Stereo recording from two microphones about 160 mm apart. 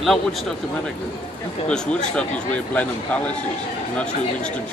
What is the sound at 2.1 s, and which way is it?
A man's voice, 10° left (ahead or behind).